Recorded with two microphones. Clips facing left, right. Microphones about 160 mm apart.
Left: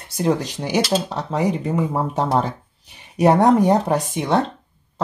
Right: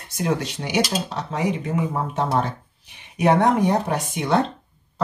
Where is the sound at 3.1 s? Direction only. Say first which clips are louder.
Left 3 dB; 35° left (ahead or behind).